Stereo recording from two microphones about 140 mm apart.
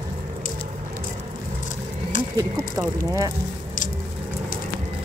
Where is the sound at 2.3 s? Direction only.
20° right (ahead or behind).